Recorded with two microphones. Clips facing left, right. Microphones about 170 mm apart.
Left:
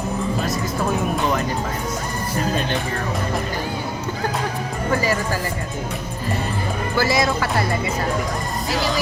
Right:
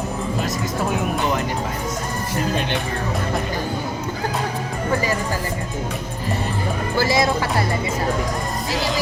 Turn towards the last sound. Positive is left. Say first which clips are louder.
# right 1 dB
turn(degrees=-25)  # may be behind; listen again after turning